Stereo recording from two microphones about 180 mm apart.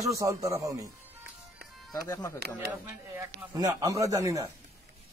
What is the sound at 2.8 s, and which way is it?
A man's voice, 15° right (ahead or behind).